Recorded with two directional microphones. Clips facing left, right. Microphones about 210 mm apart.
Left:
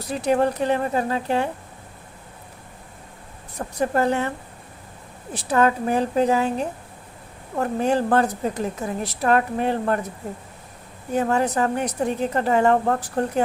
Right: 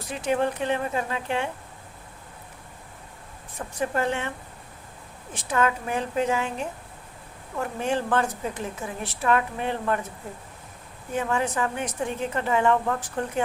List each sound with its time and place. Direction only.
0.0 s a woman's voice: 40° left (ahead or behind)
3.6 s a woman's voice: 40° left (ahead or behind)
5.3 s a woman's voice: 35° left (ahead or behind)
11.1 s a woman's voice: 40° left (ahead or behind)